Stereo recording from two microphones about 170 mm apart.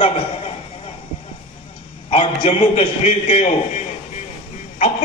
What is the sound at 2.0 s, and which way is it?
A man's voice, 35° left (ahead or behind).